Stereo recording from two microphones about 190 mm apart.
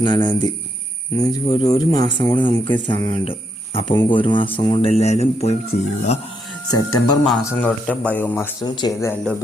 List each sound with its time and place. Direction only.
0.0 s speech: 25° left (ahead or behind)
6.7 s speech: 20° left (ahead or behind)
7.6 s speech: 5° left (ahead or behind)
8.6 s speech: 20° left (ahead or behind)